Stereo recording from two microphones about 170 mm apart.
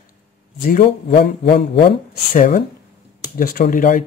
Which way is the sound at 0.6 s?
55° left (ahead or behind).